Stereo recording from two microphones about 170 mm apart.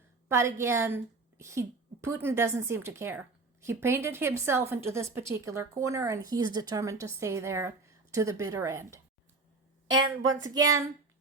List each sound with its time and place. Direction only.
0.3 s a woman's voice: 15° right (ahead or behind)
10.4 s speech: 20° right (ahead or behind)